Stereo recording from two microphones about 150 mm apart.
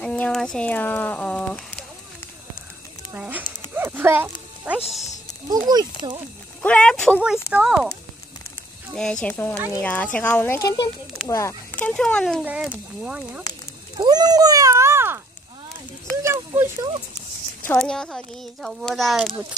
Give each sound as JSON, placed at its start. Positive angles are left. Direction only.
{"t": 0.0, "sound": "speech", "side_deg": 5}
{"t": 3.1, "sound": "a sound", "side_deg": -10}
{"t": 3.7, "sound": "speech", "side_deg": -15}
{"t": 5.7, "sound": "speech", "side_deg": -25}
{"t": 6.6, "sound": "speech", "side_deg": 10}
{"t": 7.5, "sound": "speech", "side_deg": -5}
{"t": 8.9, "sound": "speech", "side_deg": 5}
{"t": 13.0, "sound": "speech", "side_deg": -5}
{"t": 13.9, "sound": "speech", "side_deg": -30}
{"t": 16.2, "sound": "speech", "side_deg": -15}
{"t": 17.7, "sound": "speech", "side_deg": 5}